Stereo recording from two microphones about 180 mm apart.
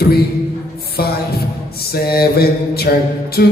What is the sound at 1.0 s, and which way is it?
Music, 60° left (ahead or behind).